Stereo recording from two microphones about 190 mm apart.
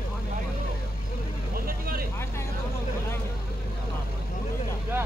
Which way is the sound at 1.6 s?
50° right (ahead or behind).